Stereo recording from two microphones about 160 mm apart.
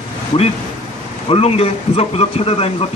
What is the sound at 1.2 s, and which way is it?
A man's voice, 40° left (ahead or behind).